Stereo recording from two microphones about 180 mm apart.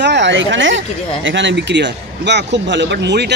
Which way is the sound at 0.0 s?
75° right (ahead or behind).